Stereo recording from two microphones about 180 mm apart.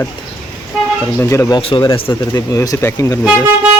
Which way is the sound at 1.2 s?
15° left (ahead or behind).